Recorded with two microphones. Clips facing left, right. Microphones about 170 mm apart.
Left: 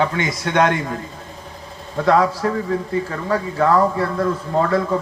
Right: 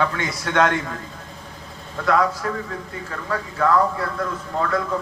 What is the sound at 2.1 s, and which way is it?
Speech, 30° left (ahead or behind).